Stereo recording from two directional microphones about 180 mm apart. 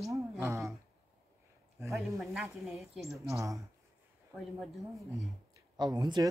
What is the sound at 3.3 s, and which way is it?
Speech, 15° right (ahead or behind).